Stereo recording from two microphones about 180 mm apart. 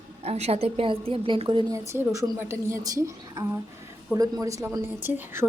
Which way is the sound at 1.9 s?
15° right (ahead or behind).